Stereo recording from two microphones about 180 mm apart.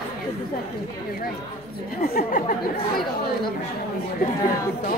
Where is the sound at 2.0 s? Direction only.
55° left (ahead or behind).